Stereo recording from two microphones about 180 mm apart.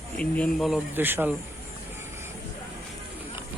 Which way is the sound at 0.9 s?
10° right (ahead or behind).